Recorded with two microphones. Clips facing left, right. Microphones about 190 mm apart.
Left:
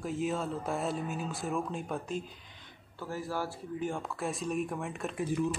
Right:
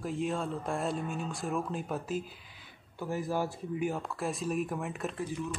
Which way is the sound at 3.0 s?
15° right (ahead or behind).